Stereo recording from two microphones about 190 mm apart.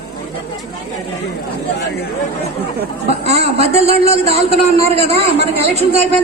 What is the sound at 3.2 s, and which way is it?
A man's voice, 35° right (ahead or behind).